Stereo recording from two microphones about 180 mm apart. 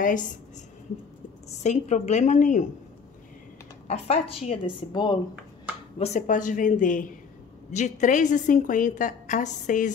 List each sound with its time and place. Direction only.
0.0 s a woman's voice: 45° left (ahead or behind)
1.6 s a woman's voice: 40° left (ahead or behind)
3.8 s speech: 35° left (ahead or behind)
5.9 s a woman's voice: 40° left (ahead or behind)